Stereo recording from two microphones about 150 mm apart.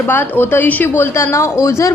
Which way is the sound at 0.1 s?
15° left (ahead or behind).